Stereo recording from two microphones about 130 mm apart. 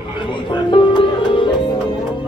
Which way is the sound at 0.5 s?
40° left (ahead or behind).